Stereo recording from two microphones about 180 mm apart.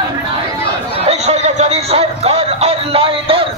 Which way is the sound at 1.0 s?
35° right (ahead or behind).